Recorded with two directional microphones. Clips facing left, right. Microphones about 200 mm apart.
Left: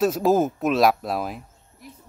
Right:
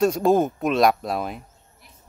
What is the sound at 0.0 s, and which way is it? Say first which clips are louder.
Speech: right 1 dB; 5° left (ahead or behind).